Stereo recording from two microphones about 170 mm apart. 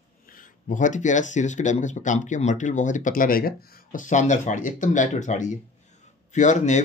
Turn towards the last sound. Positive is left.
turn(degrees=45)  # may be behind; listen again after turning